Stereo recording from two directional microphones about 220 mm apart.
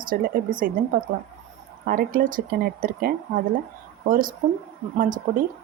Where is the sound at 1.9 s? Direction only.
40° right (ahead or behind).